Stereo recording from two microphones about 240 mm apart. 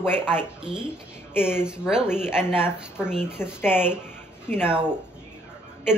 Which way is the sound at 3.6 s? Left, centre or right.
Centre.